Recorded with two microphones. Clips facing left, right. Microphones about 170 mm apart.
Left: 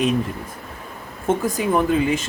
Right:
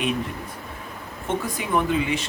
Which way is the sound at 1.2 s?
45° left (ahead or behind).